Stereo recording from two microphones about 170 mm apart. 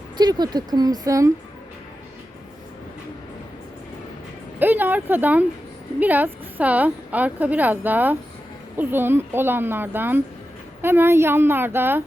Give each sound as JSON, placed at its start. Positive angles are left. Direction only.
{"t": 0.2, "sound": "speech", "side_deg": -25}
{"t": 4.6, "sound": "a woman's voice", "side_deg": -10}